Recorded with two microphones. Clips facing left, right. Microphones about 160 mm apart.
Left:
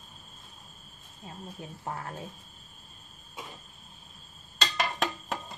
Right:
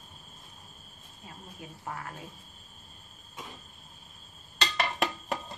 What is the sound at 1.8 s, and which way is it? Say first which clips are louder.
Speech: left 2 dB; 35° left (ahead or behind).